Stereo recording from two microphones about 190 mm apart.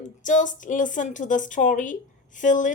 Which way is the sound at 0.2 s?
40° left (ahead or behind).